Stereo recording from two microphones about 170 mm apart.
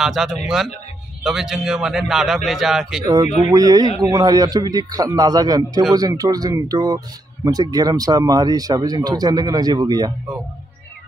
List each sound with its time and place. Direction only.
0.0 s a man's voice: centre (ahead or behind)
3.4 s speech: 20° right (ahead or behind)